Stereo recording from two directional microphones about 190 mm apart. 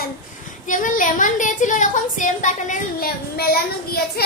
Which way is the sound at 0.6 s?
45° left (ahead or behind).